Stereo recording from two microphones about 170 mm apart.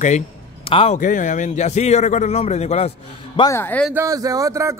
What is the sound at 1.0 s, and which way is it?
A man's voice, 50° left (ahead or behind).